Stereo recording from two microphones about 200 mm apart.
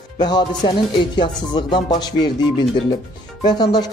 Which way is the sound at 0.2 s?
20° left (ahead or behind).